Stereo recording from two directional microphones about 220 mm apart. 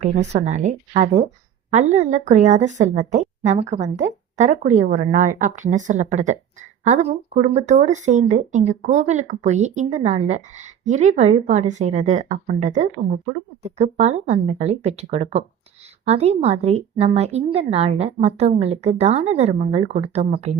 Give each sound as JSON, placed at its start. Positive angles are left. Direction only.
{"t": 0.0, "sound": "a woman's voice", "side_deg": -30}